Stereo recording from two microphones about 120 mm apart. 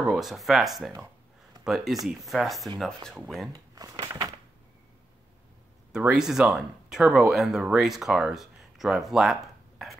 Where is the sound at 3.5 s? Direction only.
30° right (ahead or behind).